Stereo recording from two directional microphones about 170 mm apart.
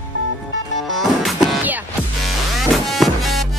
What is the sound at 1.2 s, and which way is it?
Music, centre (ahead or behind).